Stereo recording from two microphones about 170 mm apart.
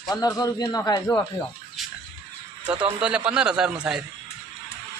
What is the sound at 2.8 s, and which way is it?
A man's voice, 5° right (ahead or behind).